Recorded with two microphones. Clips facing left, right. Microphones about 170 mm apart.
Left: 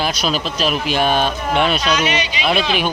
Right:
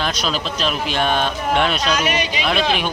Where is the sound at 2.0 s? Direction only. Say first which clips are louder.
Left 1 dB; 50° right (ahead or behind).